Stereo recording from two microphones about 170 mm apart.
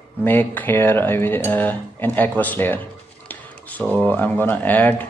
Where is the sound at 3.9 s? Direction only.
10° left (ahead or behind).